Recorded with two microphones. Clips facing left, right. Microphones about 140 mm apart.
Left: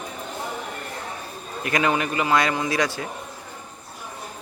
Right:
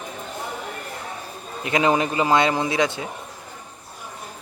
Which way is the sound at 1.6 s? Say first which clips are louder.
Right 3 dB; 20° right (ahead or behind).